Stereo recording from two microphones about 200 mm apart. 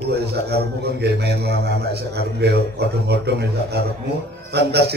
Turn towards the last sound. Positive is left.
turn(degrees=-55)  # may be behind; listen again after turning